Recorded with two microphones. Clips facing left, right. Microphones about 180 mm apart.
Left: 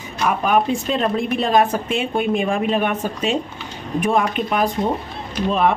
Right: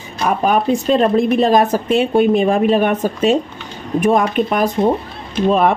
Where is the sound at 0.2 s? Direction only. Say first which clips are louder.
Right 2 dB; 40° right (ahead or behind).